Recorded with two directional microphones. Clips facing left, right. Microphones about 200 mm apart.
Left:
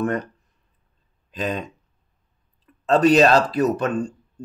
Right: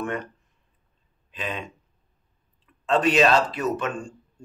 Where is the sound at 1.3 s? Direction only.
40° left (ahead or behind).